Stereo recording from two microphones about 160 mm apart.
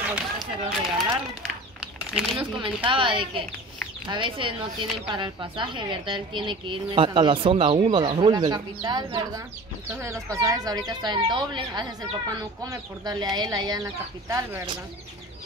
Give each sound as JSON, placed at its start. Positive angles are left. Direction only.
{"t": 0.0, "sound": "speech", "side_deg": -5}
{"t": 2.0, "sound": "speech", "side_deg": -5}
{"t": 2.6, "sound": "speech", "side_deg": -30}